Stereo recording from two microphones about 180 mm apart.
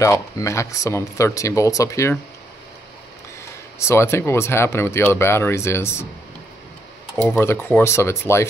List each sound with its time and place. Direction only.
0.0 s speech: 15° left (ahead or behind)
3.8 s speech: 15° left (ahead or behind)
7.2 s speech: 15° left (ahead or behind)